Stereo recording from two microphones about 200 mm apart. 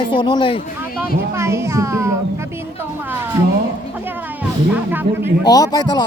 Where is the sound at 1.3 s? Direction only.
15° right (ahead or behind).